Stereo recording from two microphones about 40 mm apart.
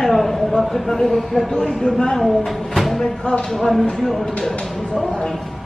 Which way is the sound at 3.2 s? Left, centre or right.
Left.